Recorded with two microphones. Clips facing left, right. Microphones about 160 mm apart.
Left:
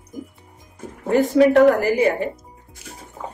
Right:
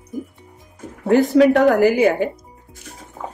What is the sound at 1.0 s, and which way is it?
A woman's voice, 80° right.